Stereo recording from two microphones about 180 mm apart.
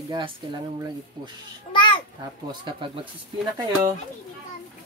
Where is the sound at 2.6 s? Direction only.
30° right (ahead or behind).